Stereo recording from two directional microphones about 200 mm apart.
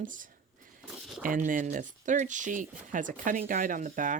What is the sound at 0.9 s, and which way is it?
Crumpling, centre (ahead or behind).